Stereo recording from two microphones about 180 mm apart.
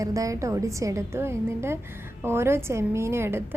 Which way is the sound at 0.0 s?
20° right (ahead or behind).